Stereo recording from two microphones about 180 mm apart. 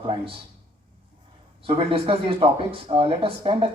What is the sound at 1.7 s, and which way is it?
Speech, 30° right (ahead or behind).